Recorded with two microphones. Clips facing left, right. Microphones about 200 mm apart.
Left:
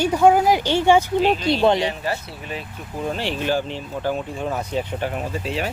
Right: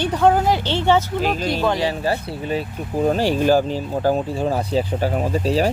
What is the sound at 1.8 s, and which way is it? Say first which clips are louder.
Speech: right 3 dB; 35° right (ahead or behind).